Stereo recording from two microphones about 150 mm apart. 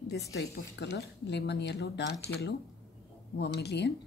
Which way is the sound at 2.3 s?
90° left.